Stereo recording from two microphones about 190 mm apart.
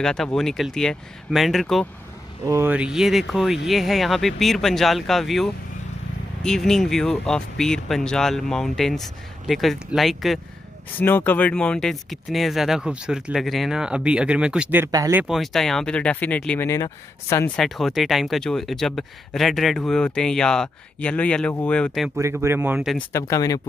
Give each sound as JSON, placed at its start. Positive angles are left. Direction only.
{"t": 0.0, "sound": "speech", "side_deg": 5}
{"t": 2.4, "sound": "speech", "side_deg": -15}
{"t": 11.0, "sound": "speech", "side_deg": 10}
{"t": 15.2, "sound": "speech", "side_deg": 0}
{"t": 17.6, "sound": "speech", "side_deg": 0}
{"t": 22.1, "sound": "speech", "side_deg": -15}
{"t": 22.9, "sound": "speech", "side_deg": 15}